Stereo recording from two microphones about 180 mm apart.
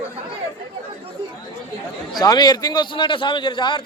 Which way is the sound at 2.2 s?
20° left (ahead or behind).